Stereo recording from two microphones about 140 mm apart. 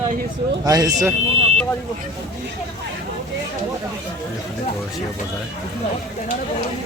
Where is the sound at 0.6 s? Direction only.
25° right (ahead or behind).